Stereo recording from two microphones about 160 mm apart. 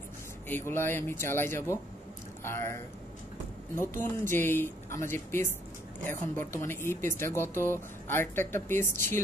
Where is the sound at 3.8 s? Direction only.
15° left (ahead or behind).